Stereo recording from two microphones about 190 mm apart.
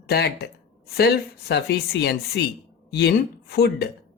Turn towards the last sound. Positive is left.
turn(degrees=55)  # may be behind; listen again after turning